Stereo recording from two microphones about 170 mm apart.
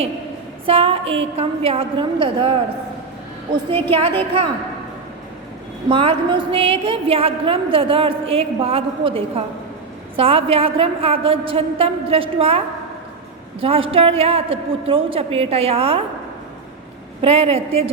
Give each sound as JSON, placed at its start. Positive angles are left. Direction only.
{"t": 0.6, "sound": "a woman's voice", "side_deg": -35}
{"t": 3.9, "sound": "a woman's voice", "side_deg": -30}
{"t": 5.9, "sound": "a woman's voice", "side_deg": -30}
{"t": 17.2, "sound": "a woman's voice", "side_deg": -35}